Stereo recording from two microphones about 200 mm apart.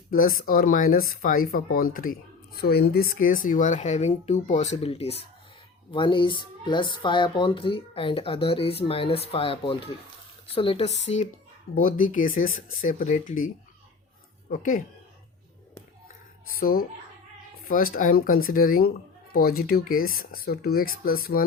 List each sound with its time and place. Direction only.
0.1 s speech: 45° left (ahead or behind); by 10.9 s 25° left (ahead or behind)
11.7 s speech: 45° left (ahead or behind)
14.5 s speech: 40° left (ahead or behind)
16.6 s speech: 45° left (ahead or behind)
17.9 s speech: 45° left (ahead or behind)